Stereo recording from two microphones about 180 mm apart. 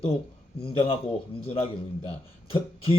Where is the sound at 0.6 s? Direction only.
30° left (ahead or behind).